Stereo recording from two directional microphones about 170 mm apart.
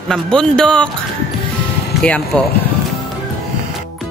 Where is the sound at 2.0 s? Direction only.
5° left (ahead or behind).